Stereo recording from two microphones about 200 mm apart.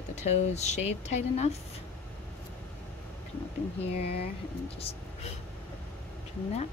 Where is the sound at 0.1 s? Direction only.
35° left (ahead or behind).